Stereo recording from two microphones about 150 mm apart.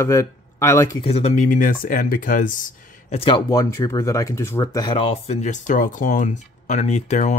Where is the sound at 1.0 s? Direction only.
45° left (ahead or behind); by 2.5 s 60° left (ahead or behind).